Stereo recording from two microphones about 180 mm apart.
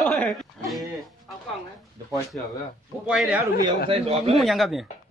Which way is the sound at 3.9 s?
35° right (ahead or behind).